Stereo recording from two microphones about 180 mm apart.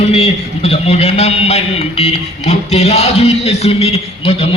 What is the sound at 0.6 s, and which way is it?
Speech, 35° left (ahead or behind).